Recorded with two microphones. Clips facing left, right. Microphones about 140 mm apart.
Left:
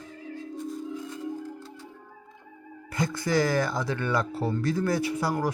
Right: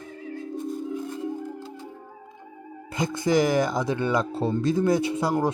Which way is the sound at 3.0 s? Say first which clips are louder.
Right 3 dB; 20° right (ahead or behind).